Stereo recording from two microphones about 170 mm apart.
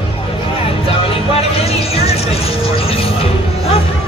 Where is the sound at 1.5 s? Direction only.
35° left (ahead or behind).